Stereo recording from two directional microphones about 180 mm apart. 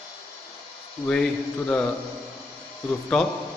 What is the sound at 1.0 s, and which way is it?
Speech, 5° left (ahead or behind).